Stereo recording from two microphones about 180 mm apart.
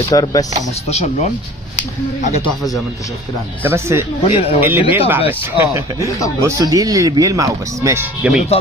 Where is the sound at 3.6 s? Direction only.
15° right (ahead or behind).